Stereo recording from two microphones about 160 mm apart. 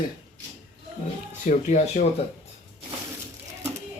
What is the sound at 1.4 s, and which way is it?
Speech, 45° left (ahead or behind).